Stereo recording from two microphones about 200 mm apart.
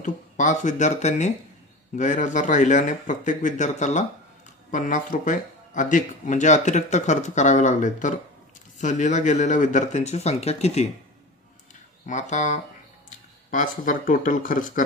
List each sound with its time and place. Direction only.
0.0 s speech: 40° left (ahead or behind)
12.1 s speech: 35° left (ahead or behind)